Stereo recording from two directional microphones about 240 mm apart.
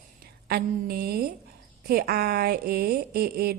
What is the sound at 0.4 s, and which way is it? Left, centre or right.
A woman's voice, right.